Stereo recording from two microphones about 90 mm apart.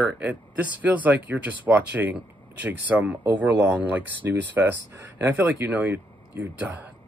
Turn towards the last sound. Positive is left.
turn(degrees=-20)  # may be behind; listen again after turning